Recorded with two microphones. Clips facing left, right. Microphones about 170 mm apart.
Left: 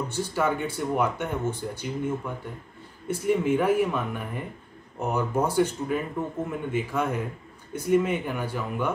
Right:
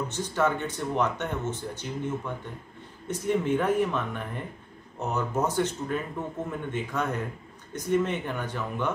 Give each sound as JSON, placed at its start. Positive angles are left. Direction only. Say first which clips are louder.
{"t": 0.1, "sound": "speech", "louder": "even", "side_deg": 10}